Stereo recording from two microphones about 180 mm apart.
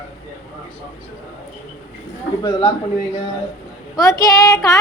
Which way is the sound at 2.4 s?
25° left (ahead or behind).